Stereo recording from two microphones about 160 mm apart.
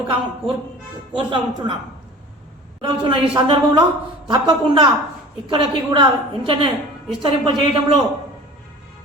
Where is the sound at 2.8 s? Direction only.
30° right (ahead or behind).